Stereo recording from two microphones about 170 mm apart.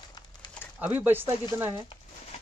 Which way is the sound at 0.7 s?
10° right (ahead or behind).